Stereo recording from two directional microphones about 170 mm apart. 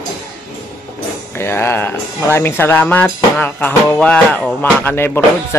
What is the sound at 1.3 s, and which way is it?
Speech, 15° left (ahead or behind).